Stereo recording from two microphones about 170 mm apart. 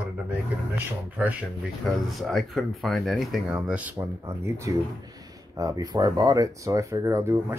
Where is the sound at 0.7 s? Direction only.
10° right (ahead or behind).